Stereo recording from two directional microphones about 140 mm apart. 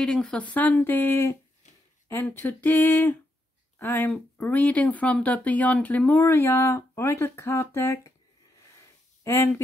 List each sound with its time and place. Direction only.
0.0 s speech: 5° left (ahead or behind)
9.2 s speech: 20° left (ahead or behind)